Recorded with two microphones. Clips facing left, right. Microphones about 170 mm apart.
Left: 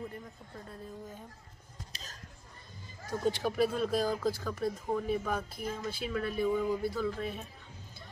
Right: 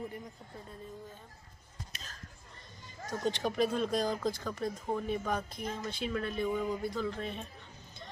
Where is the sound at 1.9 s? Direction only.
35° left (ahead or behind).